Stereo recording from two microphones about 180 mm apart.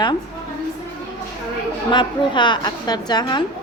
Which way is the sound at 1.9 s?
25° left (ahead or behind).